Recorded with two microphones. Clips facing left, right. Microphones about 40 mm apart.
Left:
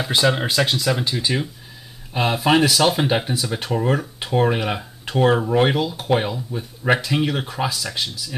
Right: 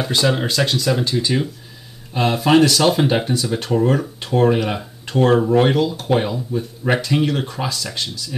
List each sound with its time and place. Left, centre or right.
0.1 s speech: centre